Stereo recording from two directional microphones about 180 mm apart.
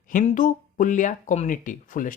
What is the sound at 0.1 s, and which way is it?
Speech, 45° left (ahead or behind).